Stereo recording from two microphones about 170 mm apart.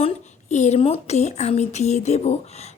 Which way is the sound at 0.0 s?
45° left (ahead or behind).